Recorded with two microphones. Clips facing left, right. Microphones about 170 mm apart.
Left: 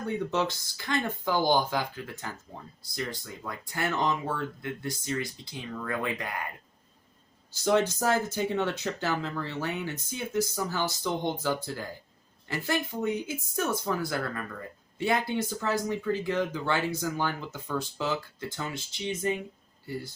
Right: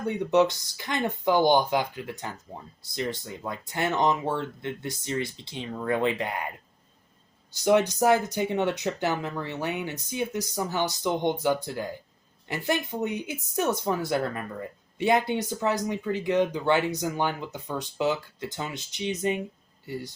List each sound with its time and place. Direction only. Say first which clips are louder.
0.3 s speech: right 8 dB; 20° right (ahead or behind)
7.5 s speech: right 3 dB; 15° right (ahead or behind)